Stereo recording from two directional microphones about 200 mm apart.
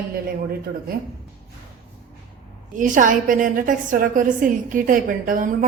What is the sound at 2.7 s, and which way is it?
A woman's voice, 40° right (ahead or behind).